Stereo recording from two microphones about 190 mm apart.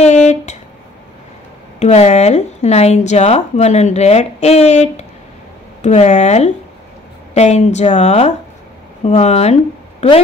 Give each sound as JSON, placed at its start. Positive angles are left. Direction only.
{"t": 0.0, "sound": "speech", "side_deg": 35}
{"t": 1.8, "sound": "speech", "side_deg": 35}